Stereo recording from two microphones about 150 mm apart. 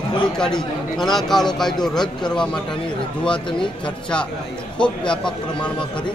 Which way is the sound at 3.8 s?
5° left (ahead or behind).